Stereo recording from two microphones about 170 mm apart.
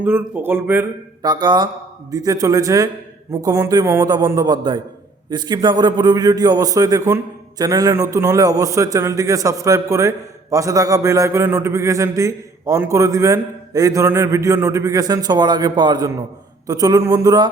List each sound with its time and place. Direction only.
0.0 s speech: 10° right (ahead or behind)
1.2 s a man's voice: 25° right (ahead or behind)